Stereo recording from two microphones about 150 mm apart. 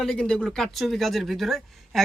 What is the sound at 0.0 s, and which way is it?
Speech, 5° left (ahead or behind).